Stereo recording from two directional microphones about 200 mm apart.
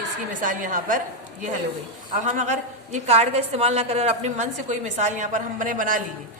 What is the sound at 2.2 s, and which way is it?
A woman's voice, 35° right (ahead or behind).